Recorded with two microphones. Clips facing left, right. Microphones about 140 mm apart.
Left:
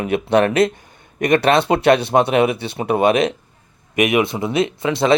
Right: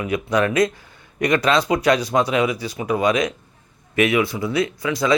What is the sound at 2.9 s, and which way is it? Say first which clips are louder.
Speech: left 4 dB; 60° left (ahead or behind).